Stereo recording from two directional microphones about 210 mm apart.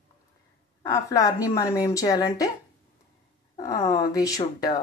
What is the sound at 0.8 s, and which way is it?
Speech, 15° left (ahead or behind).